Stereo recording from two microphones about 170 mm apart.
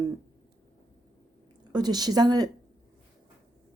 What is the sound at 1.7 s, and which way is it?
Speech, 25° right (ahead or behind).